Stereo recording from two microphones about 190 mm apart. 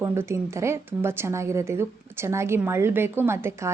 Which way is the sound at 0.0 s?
15° right (ahead or behind).